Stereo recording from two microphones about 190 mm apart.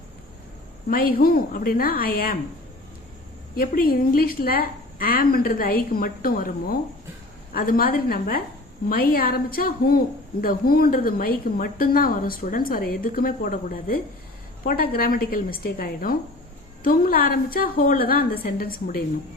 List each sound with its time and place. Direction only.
0.9 s a woman's voice: 50° left (ahead or behind)
3.5 s a woman's voice: 50° left (ahead or behind)